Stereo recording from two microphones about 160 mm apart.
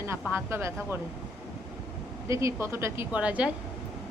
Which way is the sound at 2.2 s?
20° right (ahead or behind).